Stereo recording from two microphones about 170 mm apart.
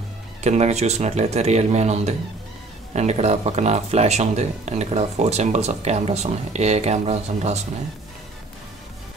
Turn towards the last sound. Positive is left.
turn(degrees=-40)  # may be behind; listen again after turning